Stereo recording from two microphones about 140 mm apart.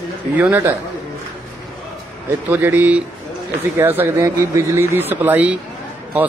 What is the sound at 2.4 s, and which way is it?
Speech, 15° right (ahead or behind).